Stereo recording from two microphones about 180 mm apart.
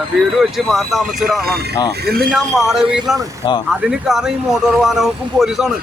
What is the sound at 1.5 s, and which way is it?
Speech, 60° right (ahead or behind).